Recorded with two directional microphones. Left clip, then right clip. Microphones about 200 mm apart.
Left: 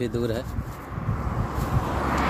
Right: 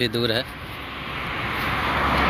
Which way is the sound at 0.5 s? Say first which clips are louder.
Right 4 dB; 30° right (ahead or behind).